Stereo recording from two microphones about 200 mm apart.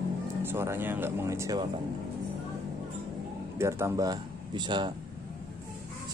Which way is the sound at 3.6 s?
15° right (ahead or behind).